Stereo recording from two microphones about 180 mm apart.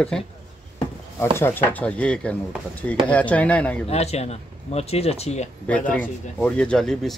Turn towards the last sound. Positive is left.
turn(degrees=5)  # may be behind; listen again after turning